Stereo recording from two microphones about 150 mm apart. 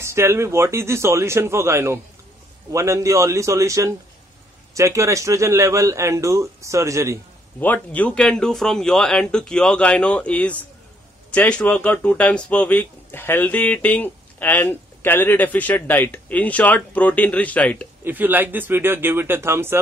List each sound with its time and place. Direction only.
0.0 s a man's voice: 20° right (ahead or behind)
7.6 s speech: 10° left (ahead or behind)
18.0 s speech: 10° right (ahead or behind)